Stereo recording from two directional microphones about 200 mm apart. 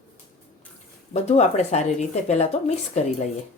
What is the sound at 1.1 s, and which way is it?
Speech, 35° left (ahead or behind).